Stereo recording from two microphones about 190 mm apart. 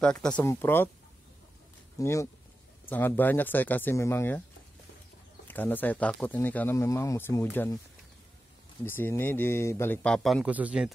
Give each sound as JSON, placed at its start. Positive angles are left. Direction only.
{"t": 0.0, "sound": "speech", "side_deg": 5}
{"t": 2.0, "sound": "speech", "side_deg": 15}
{"t": 5.5, "sound": "speech", "side_deg": 10}
{"t": 8.8, "sound": "speech", "side_deg": 10}